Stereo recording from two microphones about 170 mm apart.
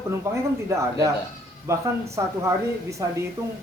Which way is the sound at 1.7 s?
15° right (ahead or behind).